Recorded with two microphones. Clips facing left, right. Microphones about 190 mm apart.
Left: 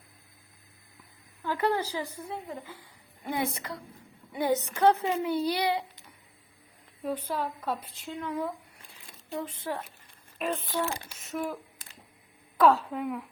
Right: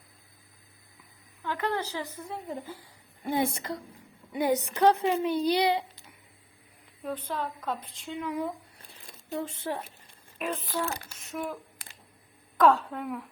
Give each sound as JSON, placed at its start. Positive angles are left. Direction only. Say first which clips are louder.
{"t": 1.4, "sound": "a woman's voice", "louder": "left 3 dB", "side_deg": 10}
{"t": 3.2, "sound": "a child's voice", "louder": "right 3 dB", "side_deg": -30}
{"t": 4.4, "sound": "a woman's voice", "louder": "right 1 dB", "side_deg": -15}
{"t": 7.0, "sound": "a woman's voice", "louder": "left 2 dB", "side_deg": 10}
{"t": 8.2, "sound": "a woman's voice", "louder": "right 1 dB", "side_deg": -15}
{"t": 9.4, "sound": "a child's voice", "louder": "right 1 dB", "side_deg": -25}
{"t": 10.3, "sound": "speech", "louder": "left 1 dB", "side_deg": 0}
{"t": 12.5, "sound": "speech", "louder": "even", "side_deg": 0}